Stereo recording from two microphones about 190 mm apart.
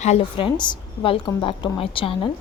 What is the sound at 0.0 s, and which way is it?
A woman's voice, 30° left (ahead or behind).